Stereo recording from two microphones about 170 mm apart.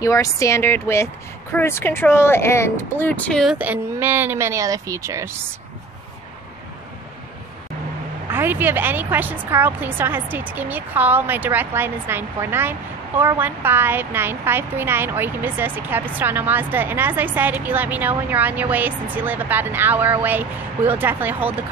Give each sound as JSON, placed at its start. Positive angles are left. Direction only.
{"t": 0.0, "sound": "speech", "side_deg": 20}
{"t": 3.5, "sound": "a woman's voice", "side_deg": -10}
{"t": 8.3, "sound": "a woman's voice", "side_deg": -10}